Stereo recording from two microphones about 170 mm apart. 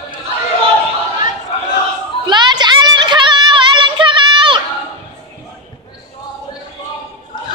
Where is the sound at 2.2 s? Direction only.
25° right (ahead or behind).